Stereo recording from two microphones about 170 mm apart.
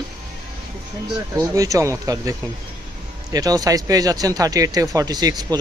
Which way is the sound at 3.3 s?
20° right (ahead or behind).